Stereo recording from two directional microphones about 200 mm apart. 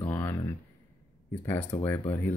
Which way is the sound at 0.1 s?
15° left (ahead or behind).